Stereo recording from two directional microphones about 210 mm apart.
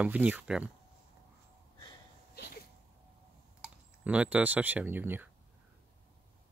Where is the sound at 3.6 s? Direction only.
5° right (ahead or behind).